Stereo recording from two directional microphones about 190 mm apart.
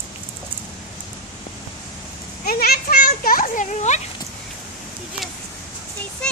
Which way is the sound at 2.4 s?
55° left (ahead or behind).